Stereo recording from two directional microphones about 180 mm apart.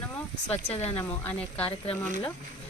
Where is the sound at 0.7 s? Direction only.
35° left (ahead or behind).